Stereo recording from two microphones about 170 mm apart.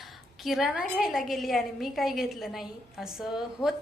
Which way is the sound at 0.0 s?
Centre (ahead or behind).